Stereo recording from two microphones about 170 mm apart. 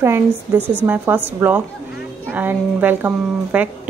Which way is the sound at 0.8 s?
10° right (ahead or behind).